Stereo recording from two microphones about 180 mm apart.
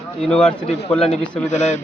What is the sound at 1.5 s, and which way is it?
Speech, 40° left (ahead or behind).